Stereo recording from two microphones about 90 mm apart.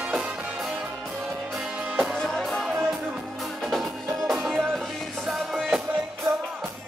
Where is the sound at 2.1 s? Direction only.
5° left (ahead or behind).